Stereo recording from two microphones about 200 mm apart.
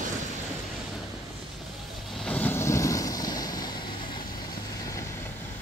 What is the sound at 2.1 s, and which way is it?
Vehicle, 5° left (ahead or behind).